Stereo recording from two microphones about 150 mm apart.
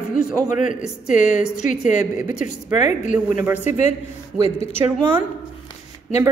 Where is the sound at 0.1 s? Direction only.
55° left (ahead or behind).